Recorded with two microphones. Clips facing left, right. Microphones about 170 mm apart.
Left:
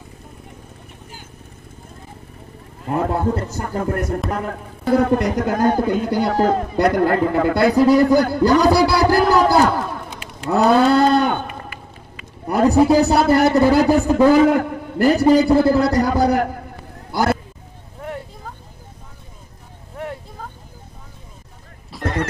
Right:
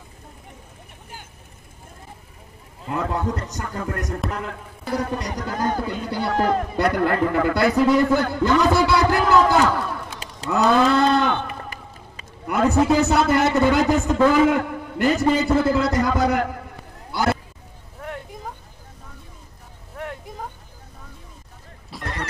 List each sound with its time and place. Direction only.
2.9 s a man's voice: 30° left (ahead or behind)
4.9 s speech: 55° left (ahead or behind)
6.3 s speech: 30° left (ahead or behind)
6.8 s a man's voice: 40° left (ahead or behind)
7.6 s a man's voice: 35° left (ahead or behind)
12.4 s a man's voice: 35° left (ahead or behind)
21.9 s neigh: centre (ahead or behind)